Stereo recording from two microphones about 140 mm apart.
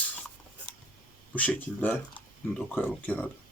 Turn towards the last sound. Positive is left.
turn(degrees=10)  # may be behind; listen again after turning